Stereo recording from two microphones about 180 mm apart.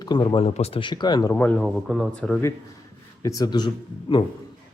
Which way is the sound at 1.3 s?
10° left (ahead or behind).